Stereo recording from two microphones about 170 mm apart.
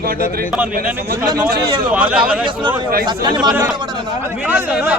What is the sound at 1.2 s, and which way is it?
Speech, 25° right (ahead or behind).